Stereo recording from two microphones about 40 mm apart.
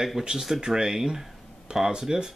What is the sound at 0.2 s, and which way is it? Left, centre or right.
Speech, centre.